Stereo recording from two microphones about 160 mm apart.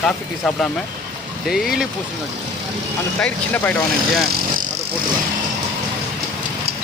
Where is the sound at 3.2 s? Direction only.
10° left (ahead or behind).